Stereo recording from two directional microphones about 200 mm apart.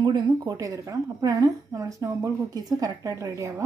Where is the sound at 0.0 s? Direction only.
20° right (ahead or behind).